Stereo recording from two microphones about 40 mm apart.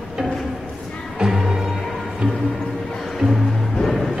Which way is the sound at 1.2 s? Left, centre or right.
Centre.